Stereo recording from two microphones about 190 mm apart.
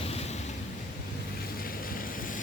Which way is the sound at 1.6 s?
50° left (ahead or behind).